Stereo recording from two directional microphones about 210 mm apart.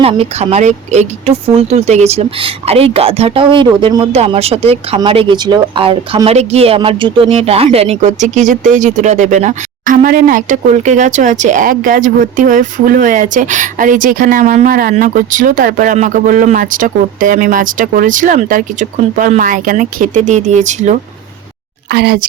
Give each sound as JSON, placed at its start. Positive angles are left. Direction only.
{"t": 0.0, "sound": "speech", "side_deg": -30}
{"t": 21.8, "sound": "speech", "side_deg": -50}